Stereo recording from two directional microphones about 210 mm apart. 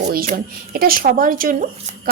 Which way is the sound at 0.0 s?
40° right (ahead or behind).